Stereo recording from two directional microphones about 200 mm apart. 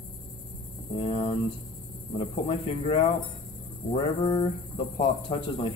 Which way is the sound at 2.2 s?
30° left (ahead or behind).